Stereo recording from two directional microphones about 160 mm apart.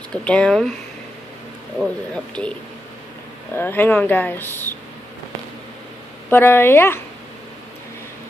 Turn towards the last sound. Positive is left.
turn(degrees=15)  # may be behind; listen again after turning